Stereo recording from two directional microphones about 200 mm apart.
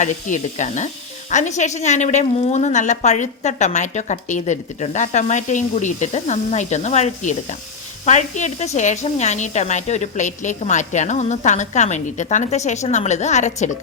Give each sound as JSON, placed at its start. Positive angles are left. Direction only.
{"t": 0.0, "sound": "a woman's voice", "side_deg": 35}